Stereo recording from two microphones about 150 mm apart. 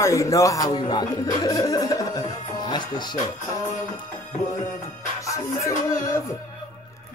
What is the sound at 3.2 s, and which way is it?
Music, 25° left (ahead or behind).